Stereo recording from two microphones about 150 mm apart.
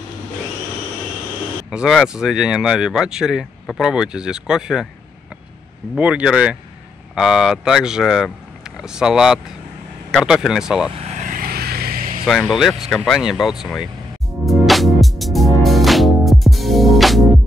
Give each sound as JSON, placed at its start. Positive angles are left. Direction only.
{"t": 1.7, "sound": "speech", "side_deg": -5}
{"t": 5.9, "sound": "speech", "side_deg": -10}
{"t": 11.0, "sound": "vehicle", "side_deg": -50}
{"t": 12.3, "sound": "speech", "side_deg": 0}
{"t": 14.4, "sound": "music", "side_deg": 0}